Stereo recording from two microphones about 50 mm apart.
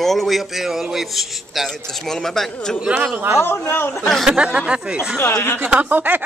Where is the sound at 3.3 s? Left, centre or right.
Left.